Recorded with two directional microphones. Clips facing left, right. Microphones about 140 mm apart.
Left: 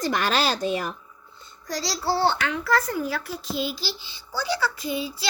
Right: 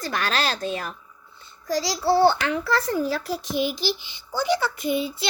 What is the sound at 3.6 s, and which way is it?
A child's voice, 15° right (ahead or behind).